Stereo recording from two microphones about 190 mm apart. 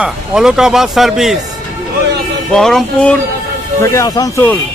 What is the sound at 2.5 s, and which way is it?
Speech, centre (ahead or behind).